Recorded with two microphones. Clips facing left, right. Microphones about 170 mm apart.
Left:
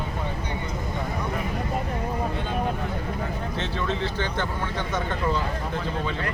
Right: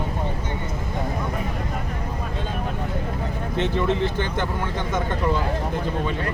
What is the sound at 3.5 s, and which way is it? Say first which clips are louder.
Speech: right 9 dB; 15° right (ahead or behind).